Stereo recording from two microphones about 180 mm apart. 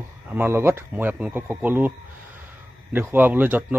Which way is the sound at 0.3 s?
10° right (ahead or behind).